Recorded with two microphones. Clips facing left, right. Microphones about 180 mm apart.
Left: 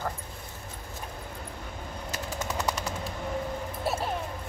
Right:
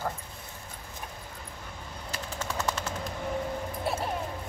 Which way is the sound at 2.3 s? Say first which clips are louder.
Left 1 dB; 15° left (ahead or behind).